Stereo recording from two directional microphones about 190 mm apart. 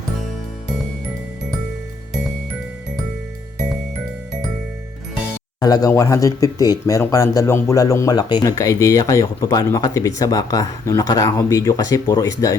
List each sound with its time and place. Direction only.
5.5 s speech: 20° left (ahead or behind)